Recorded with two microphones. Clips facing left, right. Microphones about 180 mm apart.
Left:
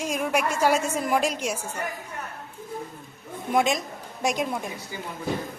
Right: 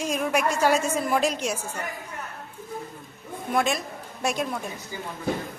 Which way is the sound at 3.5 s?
15° left (ahead or behind).